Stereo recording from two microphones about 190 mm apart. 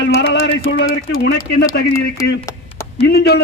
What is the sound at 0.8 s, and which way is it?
Speech, 65° left (ahead or behind).